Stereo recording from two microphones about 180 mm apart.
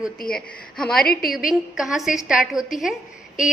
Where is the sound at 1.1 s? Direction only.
55° left (ahead or behind).